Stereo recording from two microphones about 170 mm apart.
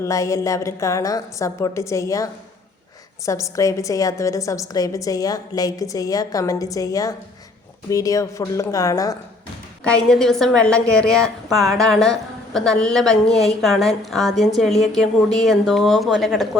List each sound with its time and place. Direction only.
0.0 s a woman's voice: 20° left (ahead or behind)
9.8 s a woman's voice: 5° left (ahead or behind)